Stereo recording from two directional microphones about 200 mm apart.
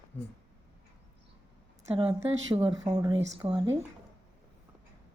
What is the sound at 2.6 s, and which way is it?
Speech, 15° right (ahead or behind).